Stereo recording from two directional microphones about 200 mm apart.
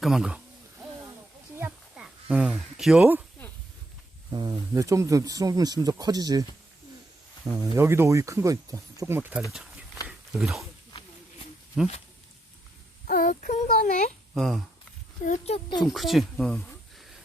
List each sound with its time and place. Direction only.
0.0 s speech: centre (ahead or behind)
1.5 s a sound: 10° right (ahead or behind)
2.3 s speech: 5° right (ahead or behind)
4.3 s speech: 20° right (ahead or behind)
7.4 s speech: 15° right (ahead or behind)
10.1 s a sound: 5° right (ahead or behind)
11.8 s speech: 5° right (ahead or behind)
13.1 s speech: 45° left (ahead or behind)
14.3 s speech: centre (ahead or behind)
15.2 s speech: 35° left (ahead or behind)
15.9 s speech: centre (ahead or behind)